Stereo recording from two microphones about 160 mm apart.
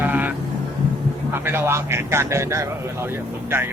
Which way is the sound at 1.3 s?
15° right (ahead or behind).